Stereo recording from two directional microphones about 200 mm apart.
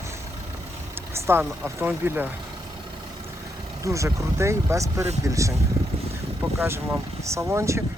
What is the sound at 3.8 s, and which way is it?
Speech, 15° right (ahead or behind).